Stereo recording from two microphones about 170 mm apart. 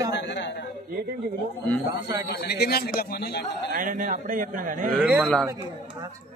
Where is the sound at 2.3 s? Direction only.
75° left (ahead or behind).